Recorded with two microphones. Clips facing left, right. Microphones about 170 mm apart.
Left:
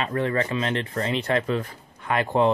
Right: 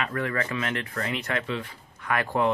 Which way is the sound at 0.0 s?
30° left (ahead or behind).